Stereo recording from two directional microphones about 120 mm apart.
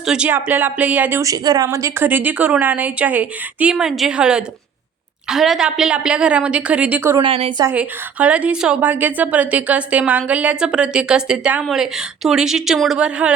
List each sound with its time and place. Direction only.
0.0 s a woman's voice: 5° right (ahead or behind)
1.2 s a woman's voice: 30° right (ahead or behind)
7.2 s a woman's voice: 50° right (ahead or behind)
7.7 s a woman's voice: 10° right (ahead or behind)